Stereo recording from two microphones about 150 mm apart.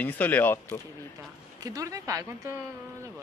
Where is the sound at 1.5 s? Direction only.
25° right (ahead or behind).